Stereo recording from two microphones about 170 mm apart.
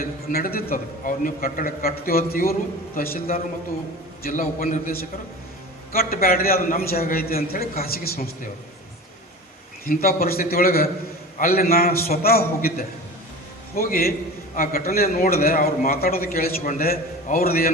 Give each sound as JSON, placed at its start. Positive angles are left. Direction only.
{"t": 0.0, "sound": "a man's voice", "side_deg": 55}
{"t": 9.8, "sound": "a man's voice", "side_deg": 60}